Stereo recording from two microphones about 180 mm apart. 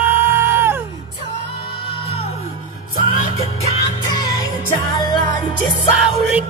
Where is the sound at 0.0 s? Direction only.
10° right (ahead or behind).